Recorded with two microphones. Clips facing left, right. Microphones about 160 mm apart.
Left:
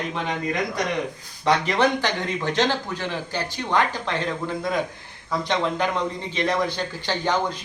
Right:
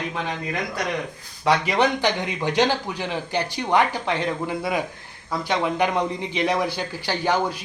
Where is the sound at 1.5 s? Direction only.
15° right (ahead or behind).